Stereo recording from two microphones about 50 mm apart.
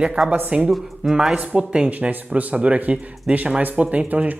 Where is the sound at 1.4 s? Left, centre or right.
Right.